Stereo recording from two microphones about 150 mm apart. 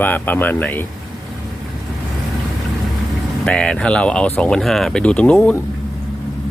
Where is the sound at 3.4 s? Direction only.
5° left (ahead or behind).